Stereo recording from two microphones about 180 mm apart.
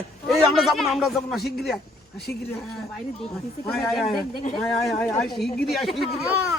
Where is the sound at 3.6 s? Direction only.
Centre (ahead or behind).